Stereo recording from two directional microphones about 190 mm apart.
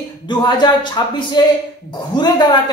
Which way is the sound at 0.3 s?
25° left (ahead or behind).